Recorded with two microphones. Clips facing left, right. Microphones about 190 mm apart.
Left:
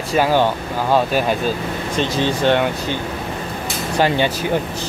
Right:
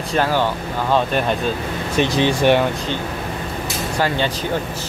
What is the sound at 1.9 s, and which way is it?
Speech, 15° right (ahead or behind).